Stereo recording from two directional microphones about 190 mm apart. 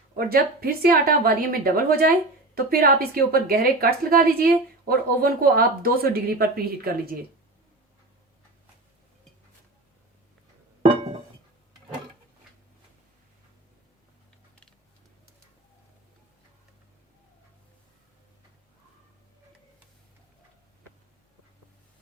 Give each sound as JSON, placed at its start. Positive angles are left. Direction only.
{"t": 0.2, "sound": "speech", "side_deg": -50}